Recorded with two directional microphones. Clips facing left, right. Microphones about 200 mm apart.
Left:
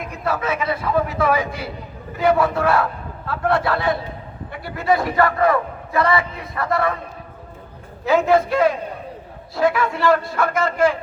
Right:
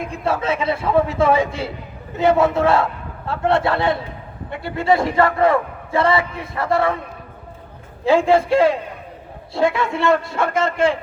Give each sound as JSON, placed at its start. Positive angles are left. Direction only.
{"t": 0.1, "sound": "a man's voice", "side_deg": -25}
{"t": 8.0, "sound": "a man's voice", "side_deg": -30}